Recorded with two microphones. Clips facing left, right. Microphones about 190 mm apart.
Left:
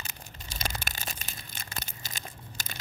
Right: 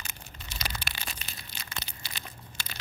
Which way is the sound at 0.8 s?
45° left (ahead or behind).